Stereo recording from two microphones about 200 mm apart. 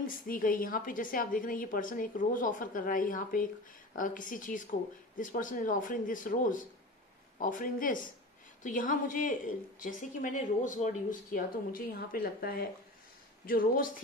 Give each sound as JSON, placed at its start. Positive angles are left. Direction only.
{"t": 0.0, "sound": "a woman's voice", "side_deg": 45}